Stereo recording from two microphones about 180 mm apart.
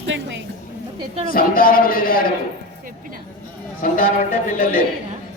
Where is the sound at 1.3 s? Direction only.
55° left (ahead or behind).